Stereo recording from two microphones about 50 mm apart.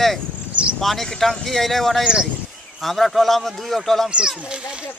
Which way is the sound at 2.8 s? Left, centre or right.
Centre.